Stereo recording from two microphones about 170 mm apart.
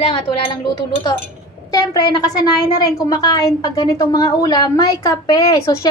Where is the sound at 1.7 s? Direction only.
25° left (ahead or behind).